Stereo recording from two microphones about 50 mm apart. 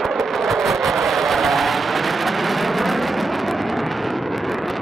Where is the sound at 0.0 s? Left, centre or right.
Centre.